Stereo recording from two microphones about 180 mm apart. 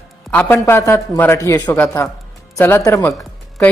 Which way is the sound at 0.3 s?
10° left (ahead or behind).